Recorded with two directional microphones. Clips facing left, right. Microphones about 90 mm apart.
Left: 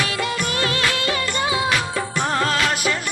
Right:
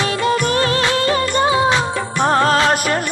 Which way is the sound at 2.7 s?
45° right (ahead or behind).